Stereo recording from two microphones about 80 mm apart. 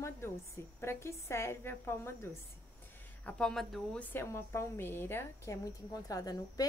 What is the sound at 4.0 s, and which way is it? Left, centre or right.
Speech, left.